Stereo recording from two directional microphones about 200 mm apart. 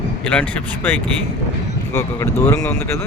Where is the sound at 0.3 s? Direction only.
5° left (ahead or behind).